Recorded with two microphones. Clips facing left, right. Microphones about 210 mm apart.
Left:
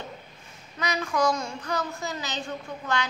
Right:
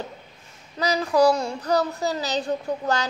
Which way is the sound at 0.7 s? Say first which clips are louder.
Right 7 dB; 35° right (ahead or behind).